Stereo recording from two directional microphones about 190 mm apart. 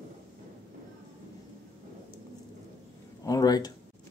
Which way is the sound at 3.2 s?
20° left (ahead or behind).